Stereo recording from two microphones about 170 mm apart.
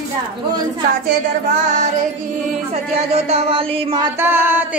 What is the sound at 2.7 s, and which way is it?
Speech, 40° right (ahead or behind).